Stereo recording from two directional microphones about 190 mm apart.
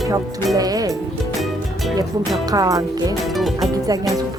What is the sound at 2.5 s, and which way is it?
Speech, 20° right (ahead or behind).